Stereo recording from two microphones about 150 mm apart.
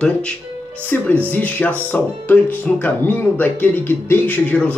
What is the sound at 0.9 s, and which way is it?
Speech, 15° left (ahead or behind).